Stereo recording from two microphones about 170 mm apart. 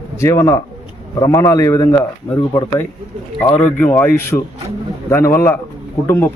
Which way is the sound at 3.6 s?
10° left (ahead or behind).